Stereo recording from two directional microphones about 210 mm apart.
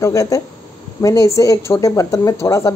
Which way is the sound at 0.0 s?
15° left (ahead or behind).